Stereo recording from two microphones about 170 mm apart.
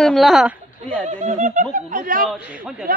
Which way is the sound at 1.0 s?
40° right (ahead or behind).